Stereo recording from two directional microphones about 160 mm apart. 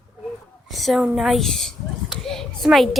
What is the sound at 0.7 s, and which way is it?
Speech, centre (ahead or behind).